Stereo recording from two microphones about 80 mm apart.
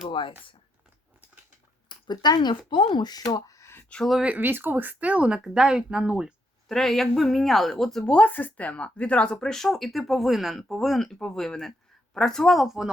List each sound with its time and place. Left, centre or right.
0.1 s speech: left
1.9 s speech: left
3.8 s speech: centre
4.2 s speech: right
6.7 s speech: centre
8.1 s speech: left; by 12.9 s centre